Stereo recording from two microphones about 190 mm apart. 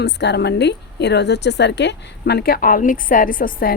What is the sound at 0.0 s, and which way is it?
A woman's voice, 65° left (ahead or behind).